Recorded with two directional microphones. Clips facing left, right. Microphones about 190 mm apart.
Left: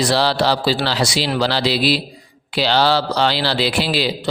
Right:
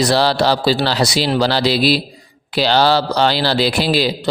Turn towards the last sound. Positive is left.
turn(degrees=-45)  # may be behind; listen again after turning